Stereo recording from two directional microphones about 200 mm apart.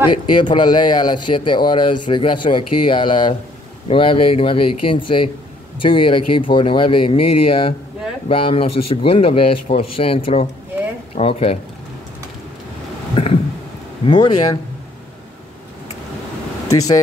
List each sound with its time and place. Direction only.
0.4 s speech: 25° left (ahead or behind)
13.1 s a sound: 30° left (ahead or behind)
14.0 s speech: 20° left (ahead or behind)
16.7 s speech: 15° left (ahead or behind)